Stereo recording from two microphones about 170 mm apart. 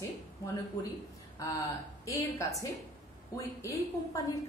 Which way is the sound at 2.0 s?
20° left (ahead or behind).